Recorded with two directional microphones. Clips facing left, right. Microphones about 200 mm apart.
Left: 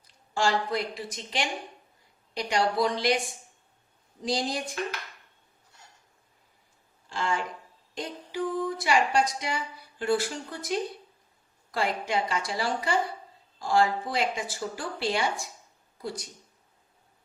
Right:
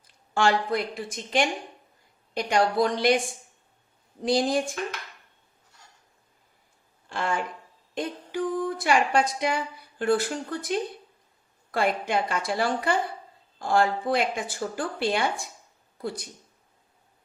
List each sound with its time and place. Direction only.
0.3 s a woman's voice: 55° right (ahead or behind)
4.2 s a woman's voice: 55° right (ahead or behind)
7.1 s a woman's voice: 60° right (ahead or behind)
7.9 s music: 55° right (ahead or behind)
8.8 s a woman's voice: 55° right (ahead or behind)